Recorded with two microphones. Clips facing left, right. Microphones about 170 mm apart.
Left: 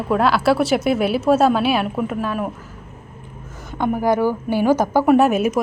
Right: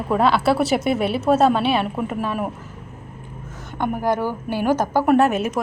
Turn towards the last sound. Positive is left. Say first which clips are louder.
# left 2 dB
turn(degrees=10)  # may be behind; listen again after turning